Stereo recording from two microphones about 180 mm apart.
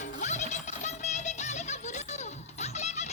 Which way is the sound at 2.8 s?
40° left (ahead or behind).